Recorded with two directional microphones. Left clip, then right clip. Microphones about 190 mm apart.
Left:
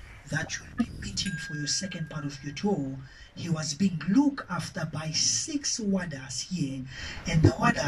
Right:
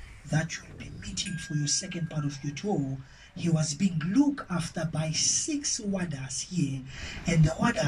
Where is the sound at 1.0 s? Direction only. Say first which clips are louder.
Left 2 dB; 40° left (ahead or behind).